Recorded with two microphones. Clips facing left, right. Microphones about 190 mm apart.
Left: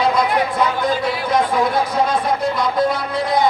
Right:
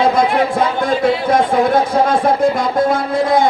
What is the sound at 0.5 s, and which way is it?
Speech, 50° right (ahead or behind).